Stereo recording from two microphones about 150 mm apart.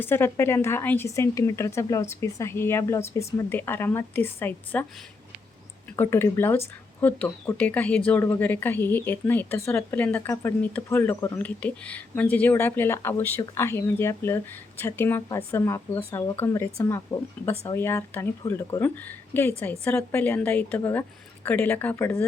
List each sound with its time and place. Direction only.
0.0 s a woman's voice: 15° left (ahead or behind)
6.0 s a woman's voice: 15° left (ahead or behind)